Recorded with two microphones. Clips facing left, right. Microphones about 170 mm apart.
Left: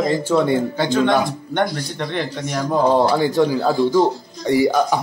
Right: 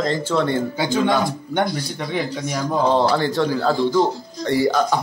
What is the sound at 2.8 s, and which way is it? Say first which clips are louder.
Speech: left 2 dB; 15° left (ahead or behind).